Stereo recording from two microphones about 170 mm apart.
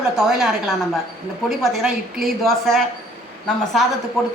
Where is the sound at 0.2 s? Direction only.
Centre (ahead or behind).